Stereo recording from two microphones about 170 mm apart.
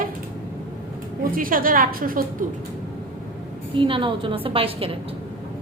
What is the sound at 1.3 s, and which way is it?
A woman's voice, 55° right (ahead or behind).